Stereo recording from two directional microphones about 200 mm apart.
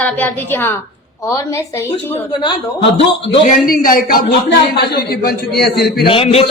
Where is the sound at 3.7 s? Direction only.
45° left (ahead or behind).